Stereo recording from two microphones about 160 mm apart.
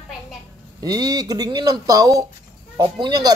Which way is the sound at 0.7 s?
25° right (ahead or behind).